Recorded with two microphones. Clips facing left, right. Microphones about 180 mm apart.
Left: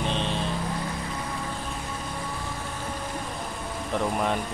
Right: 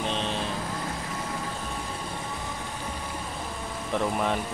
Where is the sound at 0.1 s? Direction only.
Centre (ahead or behind).